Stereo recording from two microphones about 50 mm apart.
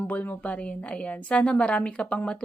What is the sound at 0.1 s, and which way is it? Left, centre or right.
Speech, left.